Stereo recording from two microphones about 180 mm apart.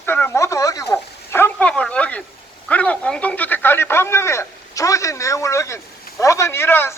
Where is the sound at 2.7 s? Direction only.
5° left (ahead or behind).